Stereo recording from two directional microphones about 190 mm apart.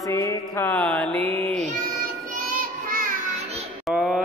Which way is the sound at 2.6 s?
50° right (ahead or behind).